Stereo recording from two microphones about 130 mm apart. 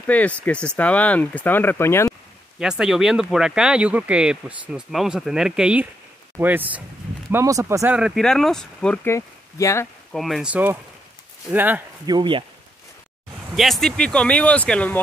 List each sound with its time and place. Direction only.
0.0 s speech: 10° left (ahead or behind)
2.6 s speech: 5° right (ahead or behind)
7.2 s speech: 25° right (ahead or behind)
8.0 s speech: centre (ahead or behind)
9.0 s speech: 20° left (ahead or behind)
10.1 s speech: centre (ahead or behind)
10.5 s speech: 15° right (ahead or behind)
12.1 s speech: 40° right (ahead or behind)
13.6 s speech: centre (ahead or behind)